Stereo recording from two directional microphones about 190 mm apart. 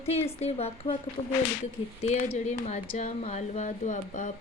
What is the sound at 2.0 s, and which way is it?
Speech, 35° left (ahead or behind).